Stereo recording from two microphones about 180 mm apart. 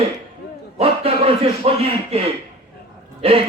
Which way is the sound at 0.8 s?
35° right (ahead or behind).